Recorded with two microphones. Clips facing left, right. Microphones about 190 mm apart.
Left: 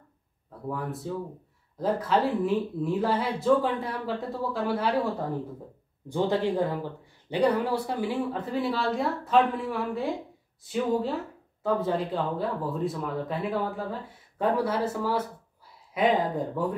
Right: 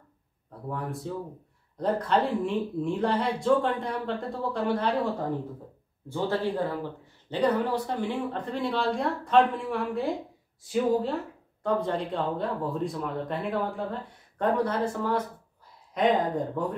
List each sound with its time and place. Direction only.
0.5 s speech: centre (ahead or behind)
6.0 s speech: 15° left (ahead or behind)